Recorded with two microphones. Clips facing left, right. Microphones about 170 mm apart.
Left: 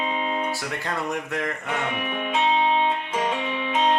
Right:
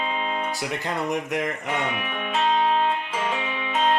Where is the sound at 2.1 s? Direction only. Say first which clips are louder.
Left 1 dB; centre (ahead or behind).